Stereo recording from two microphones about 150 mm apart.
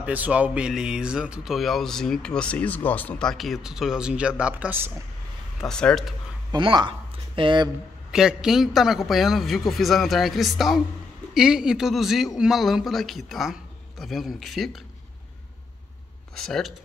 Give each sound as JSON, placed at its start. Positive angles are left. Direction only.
{"t": 0.0, "sound": "speech", "side_deg": -10}
{"t": 5.6, "sound": "speech", "side_deg": 5}
{"t": 6.5, "sound": "speech", "side_deg": -30}
{"t": 8.1, "sound": "speech", "side_deg": -5}
{"t": 16.3, "sound": "speech", "side_deg": 0}